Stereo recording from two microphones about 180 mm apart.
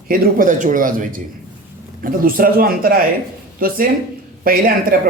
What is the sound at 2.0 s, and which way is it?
Speech, 55° right (ahead or behind).